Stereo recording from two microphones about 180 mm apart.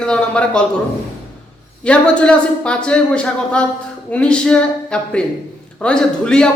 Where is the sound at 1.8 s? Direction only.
5° left (ahead or behind).